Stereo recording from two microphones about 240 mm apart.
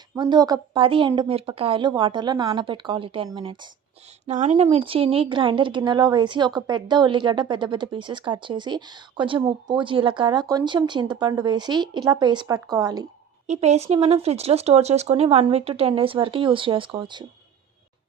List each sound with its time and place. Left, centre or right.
0.2 s speech: centre
13.5 s speech: right